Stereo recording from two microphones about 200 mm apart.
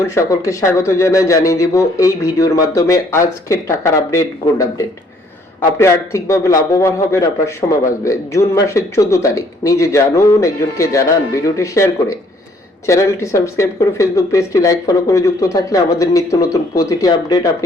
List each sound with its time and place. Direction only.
0.0 s speech: 15° left (ahead or behind)